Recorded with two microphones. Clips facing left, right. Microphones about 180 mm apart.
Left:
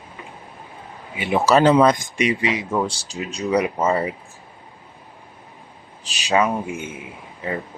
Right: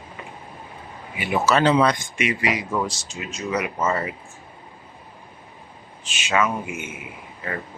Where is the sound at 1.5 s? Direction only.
45° left (ahead or behind); by 4.1 s 30° left (ahead or behind).